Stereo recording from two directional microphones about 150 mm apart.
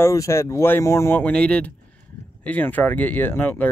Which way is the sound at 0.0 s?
20° left (ahead or behind).